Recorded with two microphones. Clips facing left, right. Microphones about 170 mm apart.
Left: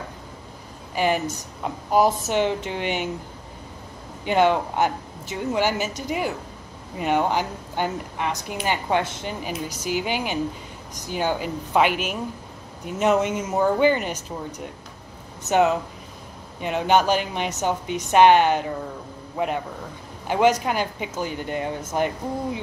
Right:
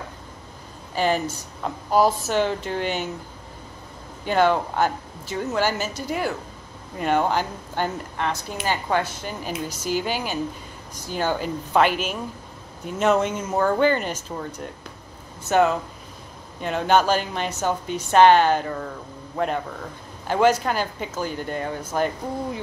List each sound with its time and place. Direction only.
0.9 s a woman's voice: 15° left (ahead or behind)
4.2 s a woman's voice: 15° left (ahead or behind)
15.4 s a woman's voice: 20° left (ahead or behind)